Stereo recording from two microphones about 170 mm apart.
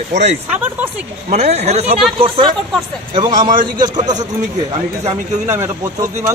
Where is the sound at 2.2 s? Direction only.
30° right (ahead or behind).